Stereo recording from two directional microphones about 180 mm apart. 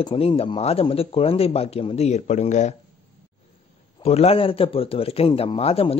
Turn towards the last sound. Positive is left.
turn(degrees=35)  # may be behind; listen again after turning